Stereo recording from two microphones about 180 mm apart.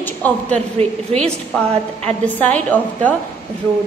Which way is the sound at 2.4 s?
5° left (ahead or behind).